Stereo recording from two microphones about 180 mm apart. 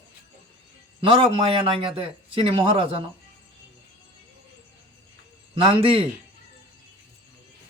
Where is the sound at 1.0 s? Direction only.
30° right (ahead or behind).